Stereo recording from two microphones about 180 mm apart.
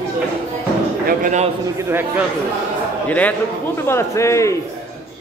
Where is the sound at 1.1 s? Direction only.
45° right (ahead or behind).